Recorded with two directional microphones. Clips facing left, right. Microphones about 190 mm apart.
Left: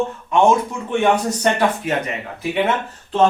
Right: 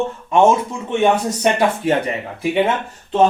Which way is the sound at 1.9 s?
30° right (ahead or behind).